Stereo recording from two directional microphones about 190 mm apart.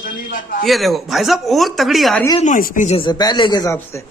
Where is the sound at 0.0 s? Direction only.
45° left (ahead or behind).